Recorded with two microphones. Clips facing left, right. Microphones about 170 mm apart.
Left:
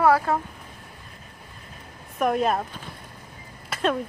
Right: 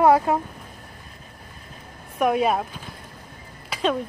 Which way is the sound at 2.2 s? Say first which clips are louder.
Right 2 dB; 5° right (ahead or behind).